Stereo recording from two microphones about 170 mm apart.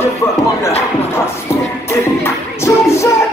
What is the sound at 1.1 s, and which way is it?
Music, 15° left (ahead or behind).